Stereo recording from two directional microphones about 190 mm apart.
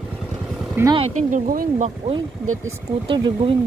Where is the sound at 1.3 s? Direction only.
45° right (ahead or behind).